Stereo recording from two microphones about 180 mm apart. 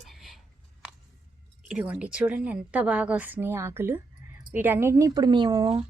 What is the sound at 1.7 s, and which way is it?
A woman's voice, 5° right (ahead or behind).